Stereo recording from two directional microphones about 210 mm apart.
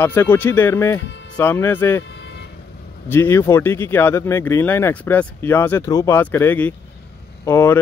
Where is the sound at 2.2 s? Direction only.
50° left (ahead or behind).